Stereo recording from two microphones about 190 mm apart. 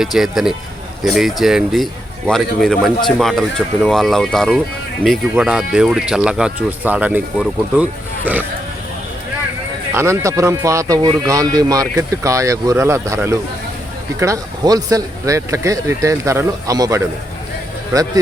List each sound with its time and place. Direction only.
0.0 s speech: centre (ahead or behind)
9.9 s speech: 15° right (ahead or behind)